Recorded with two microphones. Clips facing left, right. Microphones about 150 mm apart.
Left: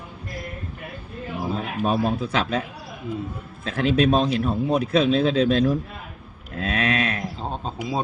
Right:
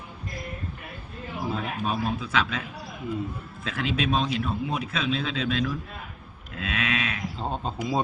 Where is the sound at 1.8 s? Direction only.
40° left (ahead or behind).